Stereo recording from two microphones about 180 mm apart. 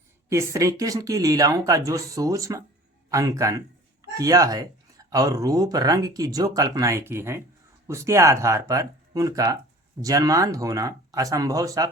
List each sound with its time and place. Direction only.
0.3 s speech: 15° right (ahead or behind)